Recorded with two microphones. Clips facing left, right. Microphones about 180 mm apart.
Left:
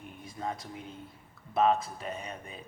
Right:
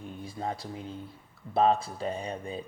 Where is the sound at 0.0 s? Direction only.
30° right (ahead or behind).